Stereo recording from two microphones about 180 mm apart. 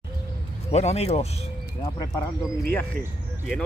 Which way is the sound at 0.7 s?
35° left (ahead or behind).